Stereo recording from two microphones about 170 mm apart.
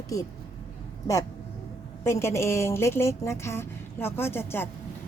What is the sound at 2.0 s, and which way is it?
A woman's voice, 15° left (ahead or behind).